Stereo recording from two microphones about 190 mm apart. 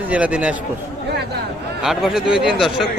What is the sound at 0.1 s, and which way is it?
Speech, 5° right (ahead or behind).